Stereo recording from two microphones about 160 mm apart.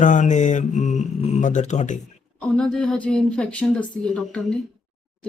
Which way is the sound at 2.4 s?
5° left (ahead or behind).